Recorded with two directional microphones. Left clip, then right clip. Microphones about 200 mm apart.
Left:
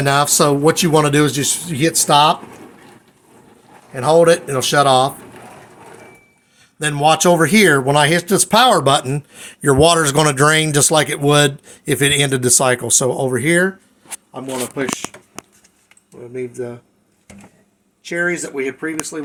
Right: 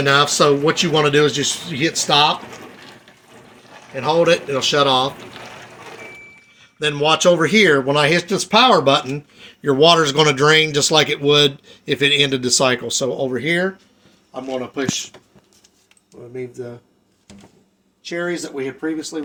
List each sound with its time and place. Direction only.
0.0 s a man's voice: 75° left (ahead or behind)
3.9 s a man's voice: 75° left (ahead or behind)
6.6 s a man's voice: 70° left (ahead or behind)
18.1 s speech: 30° left (ahead or behind)